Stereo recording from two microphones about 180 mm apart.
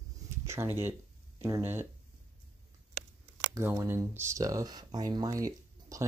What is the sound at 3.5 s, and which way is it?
Speech, 15° right (ahead or behind).